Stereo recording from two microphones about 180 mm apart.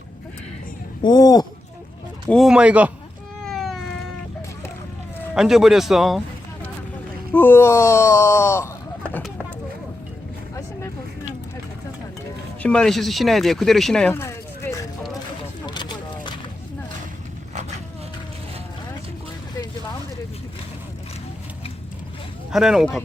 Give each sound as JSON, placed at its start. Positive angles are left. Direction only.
{"t": 1.0, "sound": "speech", "side_deg": 20}
{"t": 2.3, "sound": "speech", "side_deg": 0}
{"t": 3.4, "sound": "cat", "side_deg": 0}
{"t": 5.3, "sound": "speech", "side_deg": 0}
{"t": 7.3, "sound": "speech", "side_deg": 10}
{"t": 12.6, "sound": "speech", "side_deg": 5}
{"t": 15.6, "sound": "a sound", "side_deg": 25}
{"t": 22.5, "sound": "speech", "side_deg": 0}